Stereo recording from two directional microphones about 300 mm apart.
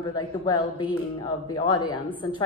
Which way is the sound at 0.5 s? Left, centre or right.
Centre.